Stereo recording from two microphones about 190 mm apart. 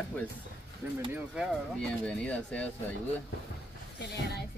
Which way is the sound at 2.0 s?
5° left (ahead or behind).